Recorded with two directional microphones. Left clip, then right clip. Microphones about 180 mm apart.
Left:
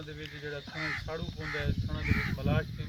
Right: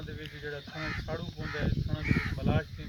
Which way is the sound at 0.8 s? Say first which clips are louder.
Left 3 dB; 40° right (ahead or behind).